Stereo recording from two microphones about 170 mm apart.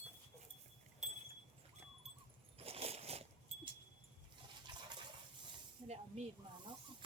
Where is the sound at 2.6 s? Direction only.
35° right (ahead or behind).